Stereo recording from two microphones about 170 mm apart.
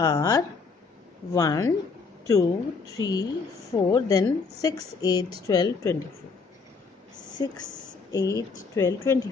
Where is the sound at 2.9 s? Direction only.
20° left (ahead or behind).